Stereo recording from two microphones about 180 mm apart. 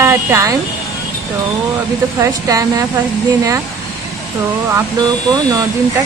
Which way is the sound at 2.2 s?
20° right (ahead or behind).